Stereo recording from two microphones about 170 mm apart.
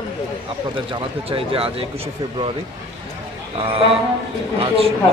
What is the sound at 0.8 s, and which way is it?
Speech, 35° right (ahead or behind).